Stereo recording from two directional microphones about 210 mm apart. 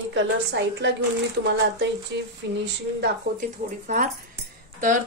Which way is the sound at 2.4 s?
55° right (ahead or behind).